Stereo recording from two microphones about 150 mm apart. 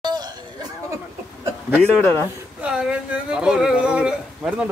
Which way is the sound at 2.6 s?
5° right (ahead or behind).